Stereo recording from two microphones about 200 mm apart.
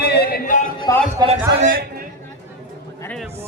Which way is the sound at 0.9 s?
20° left (ahead or behind).